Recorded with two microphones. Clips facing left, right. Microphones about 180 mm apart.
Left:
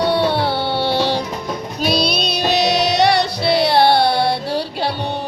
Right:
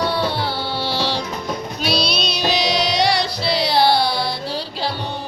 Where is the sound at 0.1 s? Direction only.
60° left (ahead or behind).